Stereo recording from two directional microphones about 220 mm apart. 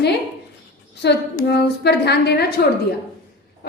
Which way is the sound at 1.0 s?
50° left (ahead or behind).